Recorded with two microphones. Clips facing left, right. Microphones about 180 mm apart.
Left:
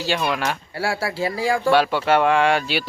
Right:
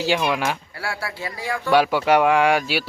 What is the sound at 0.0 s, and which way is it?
Speech, 15° right (ahead or behind).